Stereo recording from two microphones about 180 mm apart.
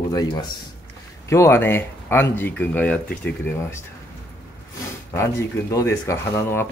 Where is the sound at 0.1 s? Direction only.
20° left (ahead or behind).